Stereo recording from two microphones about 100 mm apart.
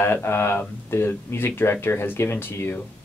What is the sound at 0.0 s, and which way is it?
Speech, 25° left (ahead or behind).